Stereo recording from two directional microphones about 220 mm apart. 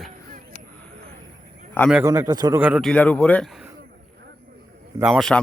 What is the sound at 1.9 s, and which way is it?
Speech, 10° right (ahead or behind).